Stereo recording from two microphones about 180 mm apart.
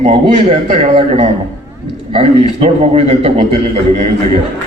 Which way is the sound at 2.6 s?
35° right (ahead or behind).